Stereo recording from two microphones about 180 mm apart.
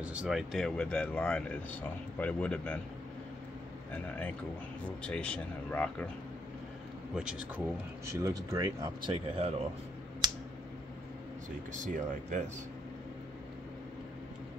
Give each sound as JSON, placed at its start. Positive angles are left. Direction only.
{"t": 0.0, "sound": "speech", "side_deg": -5}
{"t": 3.9, "sound": "speech", "side_deg": 10}
{"t": 7.2, "sound": "speech", "side_deg": -5}
{"t": 10.2, "sound": "a sound", "side_deg": -25}
{"t": 11.8, "sound": "speech", "side_deg": -45}